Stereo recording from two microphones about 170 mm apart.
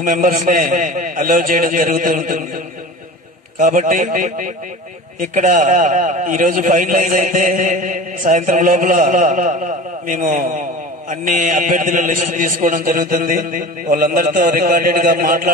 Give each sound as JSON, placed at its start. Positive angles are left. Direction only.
{"t": 0.0, "sound": "a man's voice", "side_deg": -55}